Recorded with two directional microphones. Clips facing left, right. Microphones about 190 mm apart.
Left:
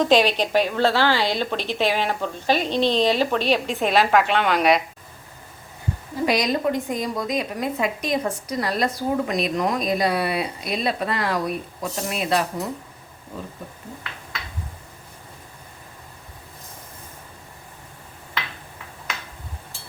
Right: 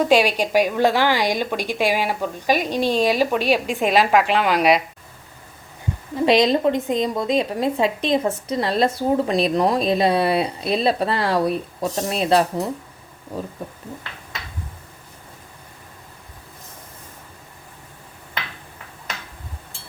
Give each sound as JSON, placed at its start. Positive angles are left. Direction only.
{"t": 0.0, "sound": "a woman's voice", "side_deg": -10}
{"t": 6.2, "sound": "speech", "side_deg": -25}